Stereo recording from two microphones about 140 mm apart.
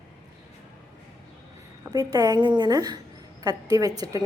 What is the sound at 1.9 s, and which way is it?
A woman's voice, 25° right (ahead or behind).